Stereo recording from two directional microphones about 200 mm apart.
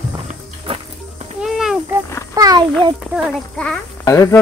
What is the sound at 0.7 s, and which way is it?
Music, 30° right (ahead or behind).